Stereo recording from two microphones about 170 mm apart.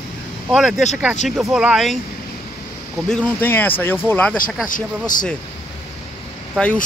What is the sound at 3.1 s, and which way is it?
Speech, 10° left (ahead or behind).